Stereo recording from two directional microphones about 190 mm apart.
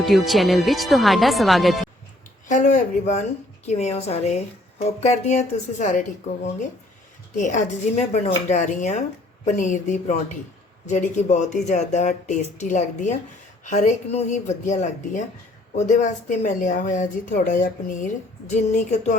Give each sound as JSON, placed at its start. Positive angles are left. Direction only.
{"t": 0.0, "sound": "speech", "side_deg": 0}
{"t": 2.5, "sound": "speech", "side_deg": 40}
{"t": 7.3, "sound": "speech", "side_deg": 40}